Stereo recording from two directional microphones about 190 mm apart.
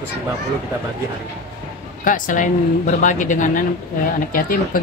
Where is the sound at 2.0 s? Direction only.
45° left (ahead or behind).